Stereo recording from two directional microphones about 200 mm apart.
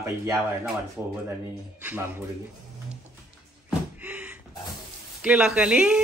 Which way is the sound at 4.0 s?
5° right (ahead or behind).